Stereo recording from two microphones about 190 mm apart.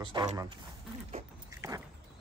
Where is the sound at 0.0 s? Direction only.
25° right (ahead or behind).